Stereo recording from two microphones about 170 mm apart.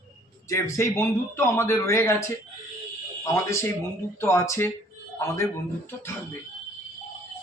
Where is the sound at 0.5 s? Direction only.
20° left (ahead or behind).